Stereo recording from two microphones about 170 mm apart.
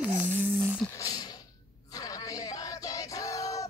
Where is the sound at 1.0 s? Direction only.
20° left (ahead or behind).